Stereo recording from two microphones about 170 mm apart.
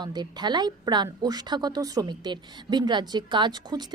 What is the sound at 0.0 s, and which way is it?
A woman's voice, 25° right (ahead or behind).